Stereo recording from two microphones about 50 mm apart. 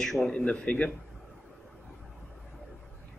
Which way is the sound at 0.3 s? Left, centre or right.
Left.